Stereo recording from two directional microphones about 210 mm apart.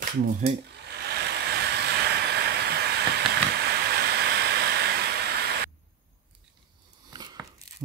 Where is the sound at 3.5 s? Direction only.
50° right (ahead or behind).